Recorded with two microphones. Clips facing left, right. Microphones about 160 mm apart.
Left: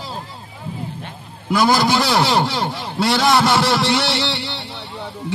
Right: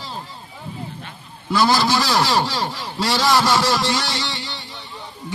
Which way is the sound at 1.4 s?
15° left (ahead or behind).